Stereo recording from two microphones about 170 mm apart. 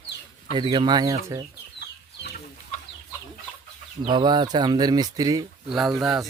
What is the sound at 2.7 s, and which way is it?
Chicken, 45° left (ahead or behind).